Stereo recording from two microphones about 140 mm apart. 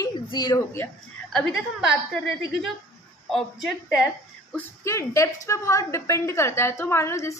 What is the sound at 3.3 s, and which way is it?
Speech, centre (ahead or behind).